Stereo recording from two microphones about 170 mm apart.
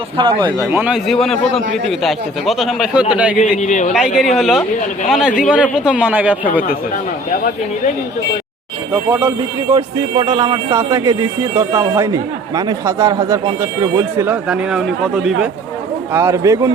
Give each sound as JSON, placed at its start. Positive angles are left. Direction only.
{"t": 0.2, "sound": "speech", "side_deg": -30}
{"t": 0.7, "sound": "a man's voice", "side_deg": -10}
{"t": 3.6, "sound": "speech", "side_deg": 45}
{"t": 3.9, "sound": "a man's voice", "side_deg": 0}
{"t": 9.0, "sound": "a man's voice", "side_deg": -10}
{"t": 9.7, "sound": "speech", "side_deg": -25}
{"t": 16.1, "sound": "speech", "side_deg": -20}